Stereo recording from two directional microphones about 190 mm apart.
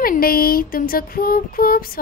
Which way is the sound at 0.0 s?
50° left (ahead or behind).